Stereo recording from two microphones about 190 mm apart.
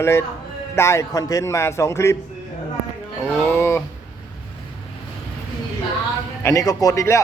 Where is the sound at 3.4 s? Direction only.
10° left (ahead or behind).